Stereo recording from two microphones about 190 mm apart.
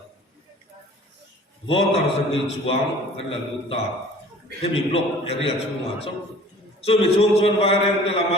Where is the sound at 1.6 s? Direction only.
30° left (ahead or behind).